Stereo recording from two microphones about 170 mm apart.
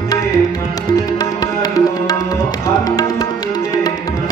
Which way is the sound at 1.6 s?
20° left (ahead or behind).